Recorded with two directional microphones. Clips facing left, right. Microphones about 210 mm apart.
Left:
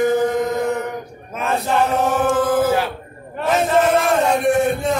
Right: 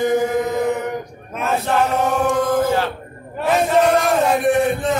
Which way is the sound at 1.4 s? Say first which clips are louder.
Even; centre (ahead or behind).